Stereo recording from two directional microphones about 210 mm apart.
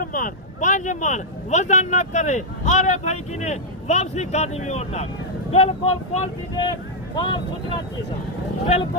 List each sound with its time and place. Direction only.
0.0 s speech: 40° left (ahead or behind)